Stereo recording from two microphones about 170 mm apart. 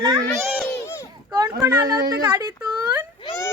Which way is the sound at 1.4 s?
25° right (ahead or behind).